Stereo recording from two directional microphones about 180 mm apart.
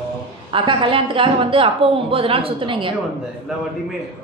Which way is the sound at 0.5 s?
30° right (ahead or behind).